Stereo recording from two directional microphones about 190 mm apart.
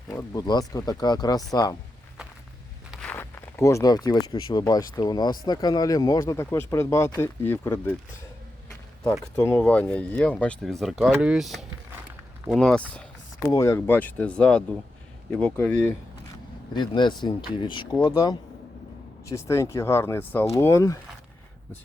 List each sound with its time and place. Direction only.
0.1 s speech: 20° left (ahead or behind)
2.9 s a sound: 5° left (ahead or behind); by 4.6 s 20° left (ahead or behind)
4.6 s speech: 20° left (ahead or behind)
9.3 s speech: 15° left (ahead or behind)
13.4 s speech: 15° left (ahead or behind)
16.7 s speech: 25° left (ahead or behind)
19.3 s speech: 15° left (ahead or behind)